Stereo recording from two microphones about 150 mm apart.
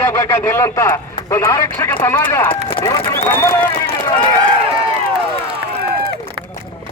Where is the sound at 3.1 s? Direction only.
15° left (ahead or behind).